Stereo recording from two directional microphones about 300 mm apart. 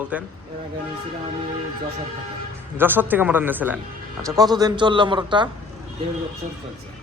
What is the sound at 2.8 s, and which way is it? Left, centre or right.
A man's voice, centre.